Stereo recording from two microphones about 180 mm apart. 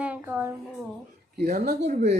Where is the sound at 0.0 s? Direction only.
10° right (ahead or behind).